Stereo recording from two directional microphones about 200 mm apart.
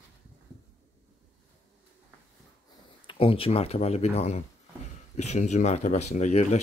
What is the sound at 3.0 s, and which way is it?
Speech, 25° left (ahead or behind).